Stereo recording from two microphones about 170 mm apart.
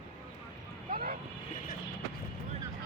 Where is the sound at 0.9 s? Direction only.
55° right (ahead or behind).